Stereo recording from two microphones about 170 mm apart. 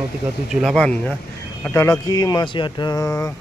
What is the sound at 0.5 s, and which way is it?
Speech, centre (ahead or behind).